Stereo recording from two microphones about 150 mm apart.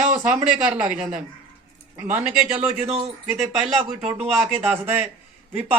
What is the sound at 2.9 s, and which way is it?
Speech, 45° right (ahead or behind).